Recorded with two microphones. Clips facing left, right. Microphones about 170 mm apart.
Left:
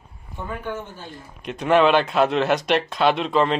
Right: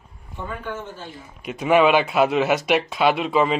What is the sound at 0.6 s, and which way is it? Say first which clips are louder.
Speech: left 1 dB; 15° left (ahead or behind).